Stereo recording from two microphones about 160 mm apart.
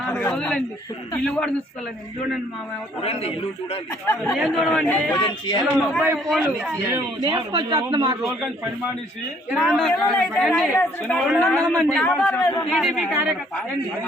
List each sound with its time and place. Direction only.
0.0 s a man's voice: 10° left (ahead or behind)
3.0 s a man's voice: 40° left (ahead or behind)
4.0 s a man's voice: 10° left (ahead or behind)
4.4 s a man's voice: centre (ahead or behind)
5.2 s a man's voice: 30° left (ahead or behind)
5.9 s a man's voice: centre (ahead or behind)
6.9 s a man's voice: 25° right (ahead or behind)
8.2 s a man's voice: centre (ahead or behind); by 12.6 s 15° left (ahead or behind)
12.7 s a man's voice: centre (ahead or behind)